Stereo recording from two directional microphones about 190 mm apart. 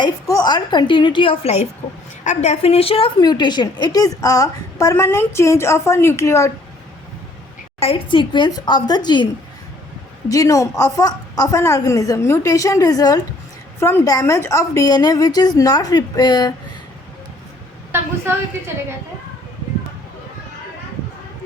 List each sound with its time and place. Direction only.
0.0 s a woman's voice: 20° left (ahead or behind)
7.8 s a woman's voice: 30° left (ahead or behind)